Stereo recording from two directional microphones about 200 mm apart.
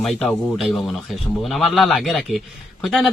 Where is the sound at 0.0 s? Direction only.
Centre (ahead or behind).